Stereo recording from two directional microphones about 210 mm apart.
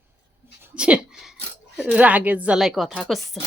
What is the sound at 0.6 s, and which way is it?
Speech, 5° right (ahead or behind).